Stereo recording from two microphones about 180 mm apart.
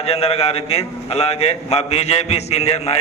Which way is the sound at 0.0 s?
35° left (ahead or behind).